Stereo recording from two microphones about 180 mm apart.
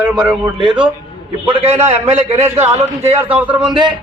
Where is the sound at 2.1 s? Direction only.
35° right (ahead or behind).